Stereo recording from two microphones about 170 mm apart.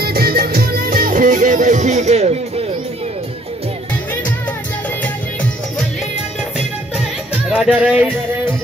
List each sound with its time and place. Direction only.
0.0 s music: 65° right (ahead or behind); by 2.6 s 40° right (ahead or behind)
7.4 s music: 5° right (ahead or behind)